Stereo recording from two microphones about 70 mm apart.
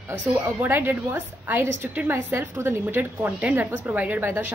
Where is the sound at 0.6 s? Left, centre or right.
Right.